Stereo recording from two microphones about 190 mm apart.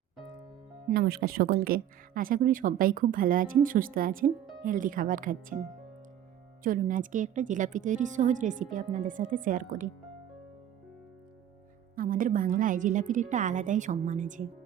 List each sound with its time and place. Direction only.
0.9 s speech: 55° right (ahead or behind)
6.6 s speech: 45° right (ahead or behind)
11.9 s a woman's voice: 45° right (ahead or behind)